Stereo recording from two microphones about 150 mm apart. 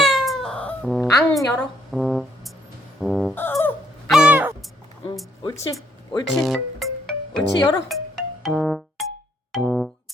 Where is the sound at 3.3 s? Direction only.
15° left (ahead or behind).